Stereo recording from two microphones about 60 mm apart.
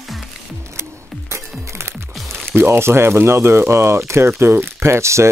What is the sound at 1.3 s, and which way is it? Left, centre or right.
Music, right.